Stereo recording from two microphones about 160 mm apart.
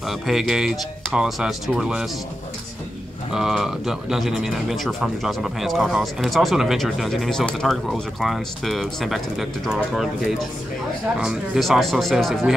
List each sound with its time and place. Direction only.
0.1 s a man's voice: centre (ahead or behind)
3.3 s a man's voice: 5° right (ahead or behind)